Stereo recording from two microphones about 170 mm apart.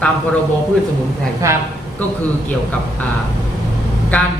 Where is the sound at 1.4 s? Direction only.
15° right (ahead or behind).